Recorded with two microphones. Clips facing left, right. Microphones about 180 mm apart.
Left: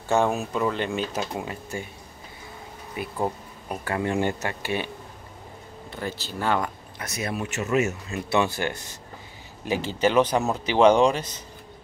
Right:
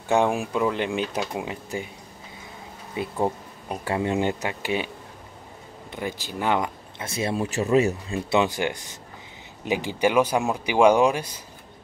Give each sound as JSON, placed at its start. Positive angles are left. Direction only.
{"t": 0.1, "sound": "speech", "side_deg": -15}
{"t": 2.9, "sound": "speech", "side_deg": -25}
{"t": 8.3, "sound": "speech", "side_deg": -15}